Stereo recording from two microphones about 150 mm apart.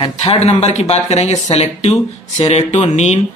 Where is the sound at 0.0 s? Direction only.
45° left (ahead or behind).